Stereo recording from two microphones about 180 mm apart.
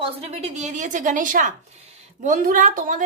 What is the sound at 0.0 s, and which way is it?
A woman's voice, 35° right (ahead or behind).